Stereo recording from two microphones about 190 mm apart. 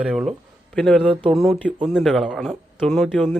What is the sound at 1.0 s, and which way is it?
Speech, 30° right (ahead or behind).